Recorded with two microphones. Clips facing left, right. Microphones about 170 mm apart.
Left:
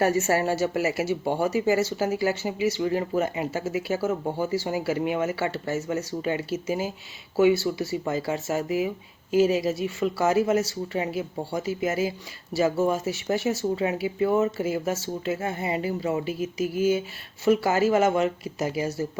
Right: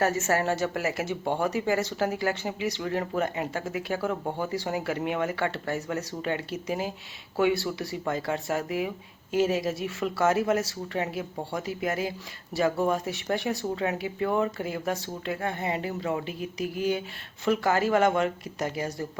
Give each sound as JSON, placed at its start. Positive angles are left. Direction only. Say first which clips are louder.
{"t": 0.0, "sound": "speech", "louder": "left 3 dB", "side_deg": 10}